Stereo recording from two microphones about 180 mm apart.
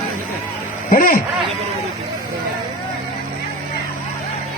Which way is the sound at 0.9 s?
55° left (ahead or behind).